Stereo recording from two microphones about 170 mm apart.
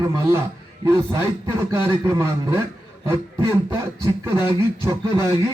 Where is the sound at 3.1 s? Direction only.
15° right (ahead or behind).